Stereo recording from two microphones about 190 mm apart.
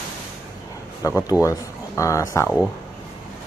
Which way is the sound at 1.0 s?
15° left (ahead or behind).